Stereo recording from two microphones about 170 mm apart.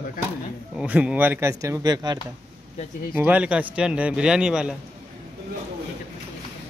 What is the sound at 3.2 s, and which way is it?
A man's voice, 10° right (ahead or behind).